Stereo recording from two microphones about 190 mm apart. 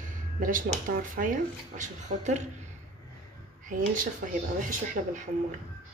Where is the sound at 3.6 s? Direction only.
45° right (ahead or behind).